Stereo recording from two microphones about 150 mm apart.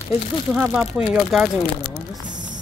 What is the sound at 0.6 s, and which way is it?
Speech, 5° right (ahead or behind).